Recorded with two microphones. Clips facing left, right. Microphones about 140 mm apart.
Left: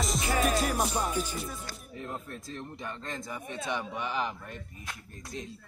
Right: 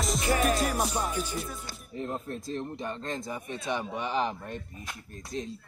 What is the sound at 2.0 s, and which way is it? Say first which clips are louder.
Speech: right 6 dB; 25° right (ahead or behind).